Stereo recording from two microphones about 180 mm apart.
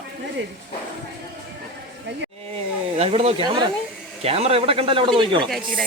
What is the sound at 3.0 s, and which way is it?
Speech, 35° right (ahead or behind).